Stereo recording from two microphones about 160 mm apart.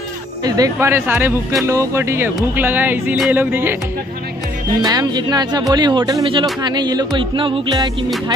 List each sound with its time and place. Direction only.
0.4 s speech: 25° right (ahead or behind)
4.8 s speech: 25° right (ahead or behind)